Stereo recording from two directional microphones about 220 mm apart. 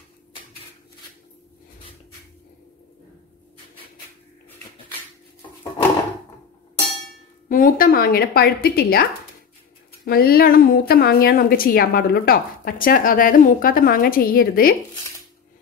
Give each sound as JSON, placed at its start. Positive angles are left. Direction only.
{"t": 7.4, "sound": "a woman's voice", "side_deg": 40}
{"t": 10.0, "sound": "a woman's voice", "side_deg": 45}